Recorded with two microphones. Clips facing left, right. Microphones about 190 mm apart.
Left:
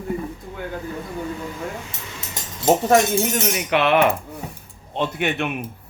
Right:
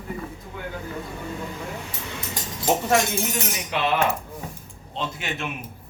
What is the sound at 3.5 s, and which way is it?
A man's voice, 70° left (ahead or behind).